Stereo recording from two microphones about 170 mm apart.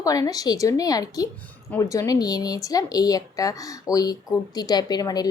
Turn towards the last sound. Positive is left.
turn(degrees=25)  # may be behind; listen again after turning